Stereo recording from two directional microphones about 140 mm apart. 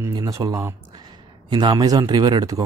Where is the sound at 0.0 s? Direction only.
25° right (ahead or behind).